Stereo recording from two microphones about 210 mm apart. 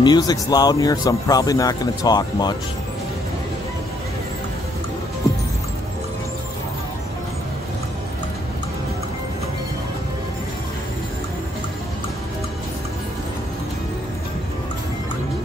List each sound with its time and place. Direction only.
0.0 s speech: 20° left (ahead or behind)